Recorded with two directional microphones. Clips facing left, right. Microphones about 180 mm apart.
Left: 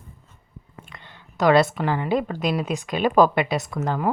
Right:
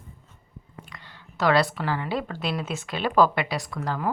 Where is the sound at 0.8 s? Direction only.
25° left (ahead or behind).